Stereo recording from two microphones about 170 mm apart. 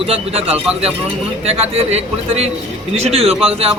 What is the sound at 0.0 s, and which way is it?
Speech, 35° right (ahead or behind).